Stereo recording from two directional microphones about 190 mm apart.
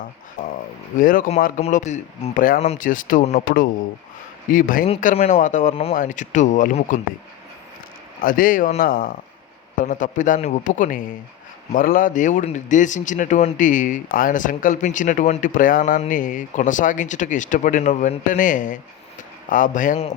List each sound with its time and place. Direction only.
0.4 s speech: 40° left (ahead or behind)
8.2 s speech: 45° left (ahead or behind)